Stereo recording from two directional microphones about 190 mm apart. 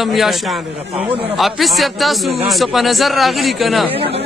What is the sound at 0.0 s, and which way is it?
A man's voice, centre (ahead or behind).